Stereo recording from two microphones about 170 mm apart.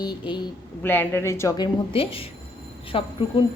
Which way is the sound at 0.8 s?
10° left (ahead or behind).